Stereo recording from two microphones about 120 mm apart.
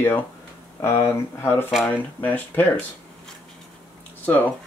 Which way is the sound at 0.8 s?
20° left (ahead or behind).